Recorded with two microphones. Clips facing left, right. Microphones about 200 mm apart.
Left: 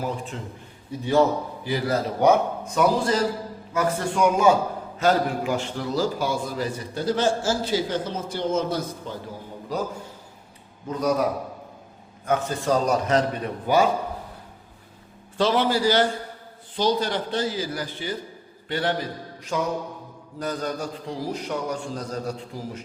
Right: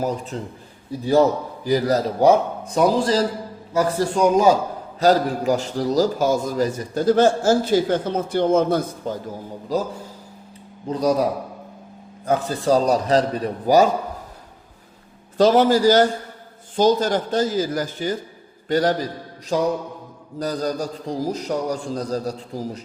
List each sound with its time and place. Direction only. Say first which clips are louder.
0.0 s a man's voice: right 5 dB; 40° right (ahead or behind); by 9.1 s 55° right (ahead or behind)
10.8 s a man's voice: right 3 dB; 35° right (ahead or behind)
15.4 s a man's voice: right 6 dB; 40° right (ahead or behind)